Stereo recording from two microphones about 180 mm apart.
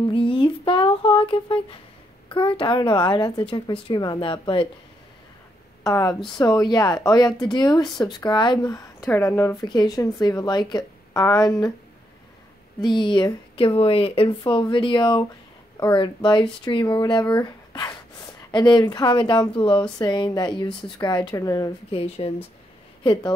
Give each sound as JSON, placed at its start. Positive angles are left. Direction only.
{"t": 0.1, "sound": "humming", "side_deg": 30}
{"t": 2.2, "sound": "speech", "side_deg": 30}
{"t": 5.9, "sound": "speech", "side_deg": 20}
{"t": 12.8, "sound": "speech", "side_deg": 25}
{"t": 21.9, "sound": "speech", "side_deg": 30}